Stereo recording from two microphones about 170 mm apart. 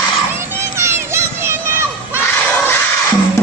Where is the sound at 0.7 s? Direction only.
15° right (ahead or behind).